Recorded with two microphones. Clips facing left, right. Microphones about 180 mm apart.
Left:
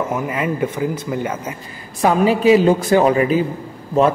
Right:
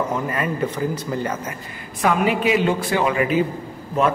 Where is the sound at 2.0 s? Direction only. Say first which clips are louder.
Left 4 dB; 30° left (ahead or behind).